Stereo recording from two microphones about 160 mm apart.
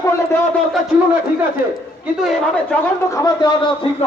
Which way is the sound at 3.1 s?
20° left (ahead or behind).